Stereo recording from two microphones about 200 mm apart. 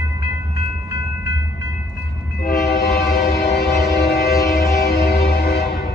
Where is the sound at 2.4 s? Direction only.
50° left (ahead or behind).